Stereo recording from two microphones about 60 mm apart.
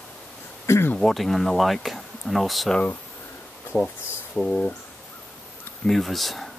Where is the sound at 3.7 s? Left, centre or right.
Centre.